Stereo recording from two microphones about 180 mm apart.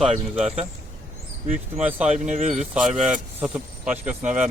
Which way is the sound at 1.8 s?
10° right (ahead or behind).